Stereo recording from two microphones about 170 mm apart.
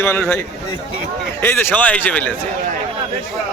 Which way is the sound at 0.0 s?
15° left (ahead or behind).